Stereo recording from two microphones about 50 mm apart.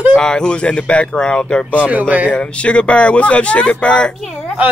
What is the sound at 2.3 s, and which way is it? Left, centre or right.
Speech, left.